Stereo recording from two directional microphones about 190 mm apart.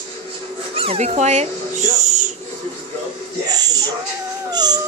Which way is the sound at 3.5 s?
20° right (ahead or behind).